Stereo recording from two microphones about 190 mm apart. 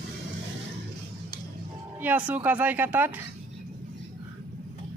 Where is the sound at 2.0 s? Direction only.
10° right (ahead or behind).